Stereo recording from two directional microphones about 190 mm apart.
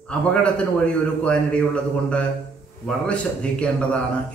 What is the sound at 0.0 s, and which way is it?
A man's voice, 5° left (ahead or behind).